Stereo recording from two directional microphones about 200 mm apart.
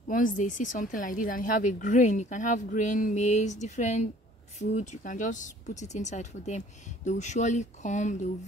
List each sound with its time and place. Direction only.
0.1 s speech: 40° left (ahead or behind)